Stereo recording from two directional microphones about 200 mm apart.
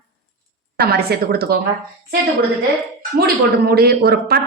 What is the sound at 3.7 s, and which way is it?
Speech, 50° right (ahead or behind).